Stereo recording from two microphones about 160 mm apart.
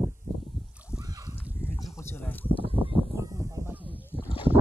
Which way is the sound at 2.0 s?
15° left (ahead or behind).